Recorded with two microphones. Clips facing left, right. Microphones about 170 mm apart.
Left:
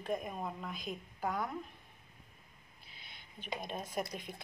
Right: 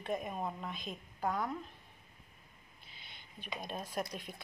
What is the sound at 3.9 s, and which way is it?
Speech, 5° left (ahead or behind).